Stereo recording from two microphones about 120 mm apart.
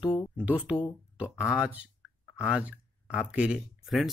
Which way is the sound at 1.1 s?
10° right (ahead or behind).